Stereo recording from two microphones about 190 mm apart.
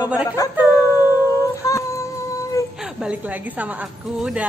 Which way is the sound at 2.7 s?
5° right (ahead or behind).